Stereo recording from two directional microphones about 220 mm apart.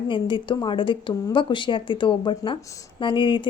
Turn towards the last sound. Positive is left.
turn(degrees=20)  # may be behind; listen again after turning